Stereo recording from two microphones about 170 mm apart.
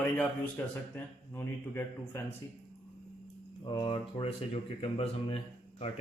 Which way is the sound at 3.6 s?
30° left (ahead or behind).